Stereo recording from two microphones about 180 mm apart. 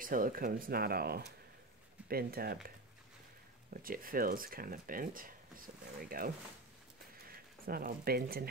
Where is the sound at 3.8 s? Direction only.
55° right (ahead or behind).